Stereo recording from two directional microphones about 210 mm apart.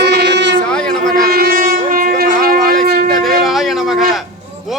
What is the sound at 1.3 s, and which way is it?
Shofar, 45° right (ahead or behind).